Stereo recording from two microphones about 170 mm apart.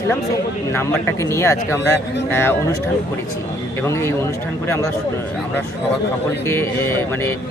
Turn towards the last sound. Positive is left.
turn(degrees=15)  # may be behind; listen again after turning